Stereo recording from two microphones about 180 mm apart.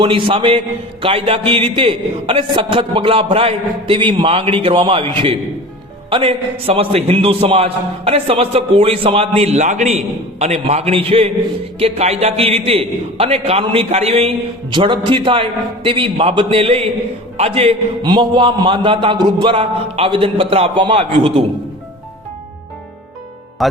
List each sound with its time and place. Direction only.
0.0 s a man's voice: 30° right (ahead or behind)
23.6 s speech: centre (ahead or behind)